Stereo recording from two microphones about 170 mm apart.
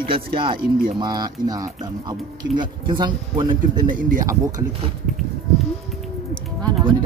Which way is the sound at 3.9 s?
50° right (ahead or behind).